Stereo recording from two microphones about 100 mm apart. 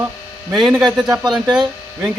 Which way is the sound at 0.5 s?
5° right (ahead or behind).